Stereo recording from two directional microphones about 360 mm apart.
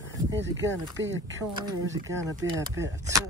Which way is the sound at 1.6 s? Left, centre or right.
Centre.